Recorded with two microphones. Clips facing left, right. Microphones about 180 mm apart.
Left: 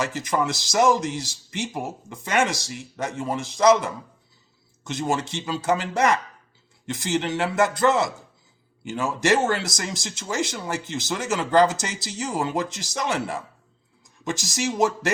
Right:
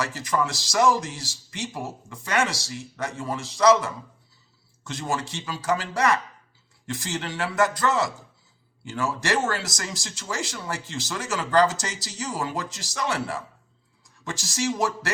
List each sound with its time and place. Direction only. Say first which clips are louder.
0.0 s speech: left 2 dB; 20° left (ahead or behind)